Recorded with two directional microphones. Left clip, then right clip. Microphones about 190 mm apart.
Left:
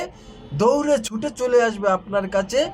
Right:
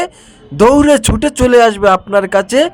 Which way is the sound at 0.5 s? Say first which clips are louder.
Right 10 dB; 45° right (ahead or behind).